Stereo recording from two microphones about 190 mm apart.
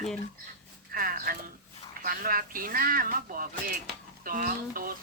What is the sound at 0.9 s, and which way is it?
Speech, 50° right (ahead or behind).